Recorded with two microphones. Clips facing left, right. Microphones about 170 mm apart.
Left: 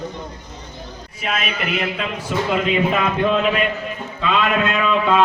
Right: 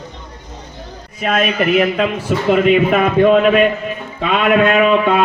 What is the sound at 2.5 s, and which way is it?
A man's voice, 60° right (ahead or behind).